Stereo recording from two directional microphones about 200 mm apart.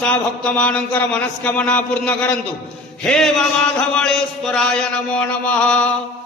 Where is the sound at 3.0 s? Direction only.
Centre (ahead or behind).